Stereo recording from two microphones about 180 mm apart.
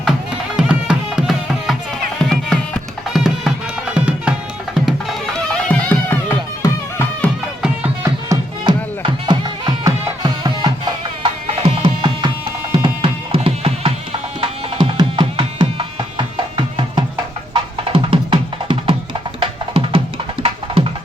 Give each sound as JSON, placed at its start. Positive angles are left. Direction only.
{"t": 0.5, "sound": "music", "side_deg": -5}
{"t": 8.0, "sound": "music", "side_deg": -15}